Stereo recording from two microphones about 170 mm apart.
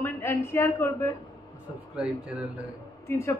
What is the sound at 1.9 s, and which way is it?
Speech, 5° right (ahead or behind).